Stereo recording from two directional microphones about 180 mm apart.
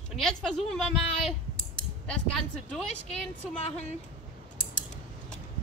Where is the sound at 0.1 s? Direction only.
Centre (ahead or behind).